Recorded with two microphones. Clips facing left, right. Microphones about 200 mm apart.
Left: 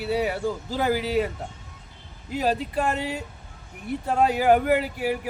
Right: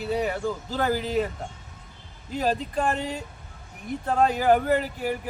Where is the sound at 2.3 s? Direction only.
5° left (ahead or behind).